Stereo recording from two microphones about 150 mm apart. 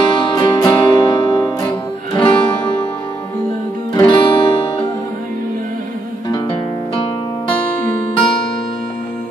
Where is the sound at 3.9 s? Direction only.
30° left (ahead or behind).